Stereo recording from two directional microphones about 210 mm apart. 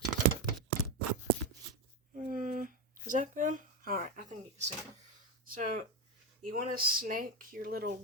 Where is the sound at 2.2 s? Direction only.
40° right (ahead or behind).